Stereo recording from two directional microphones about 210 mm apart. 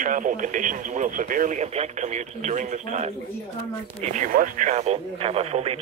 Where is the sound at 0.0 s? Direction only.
40° right (ahead or behind).